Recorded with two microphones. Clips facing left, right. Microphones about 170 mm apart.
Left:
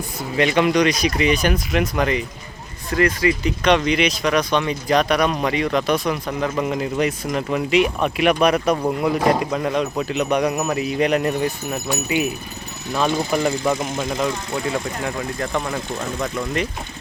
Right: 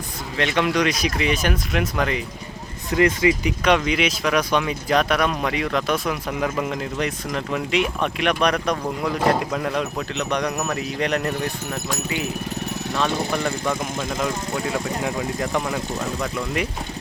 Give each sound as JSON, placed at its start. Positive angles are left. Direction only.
{"t": 0.3, "sound": "speech", "side_deg": 0}
{"t": 2.9, "sound": "speech", "side_deg": -20}
{"t": 3.6, "sound": "speech", "side_deg": -5}